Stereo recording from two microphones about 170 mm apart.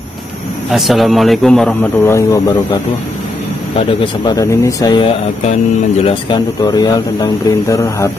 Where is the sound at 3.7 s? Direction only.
30° left (ahead or behind).